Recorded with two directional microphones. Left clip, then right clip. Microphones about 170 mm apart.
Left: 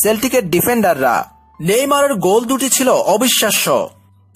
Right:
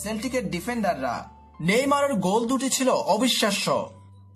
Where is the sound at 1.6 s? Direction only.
40° left (ahead or behind).